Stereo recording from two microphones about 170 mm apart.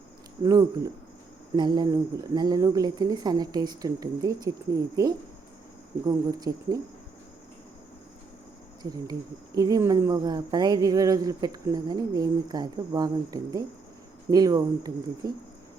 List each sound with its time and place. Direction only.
0.4 s speech: 20° right (ahead or behind)
8.8 s speech: 20° right (ahead or behind)